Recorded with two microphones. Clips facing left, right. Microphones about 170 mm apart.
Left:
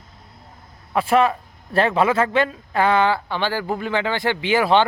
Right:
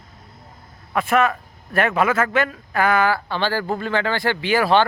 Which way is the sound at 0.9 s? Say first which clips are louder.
Left 1 dB; 30° left (ahead or behind).